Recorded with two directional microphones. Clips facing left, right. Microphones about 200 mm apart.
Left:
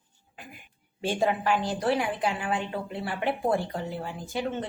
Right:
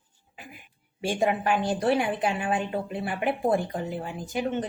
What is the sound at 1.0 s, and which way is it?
Speech, 15° right (ahead or behind).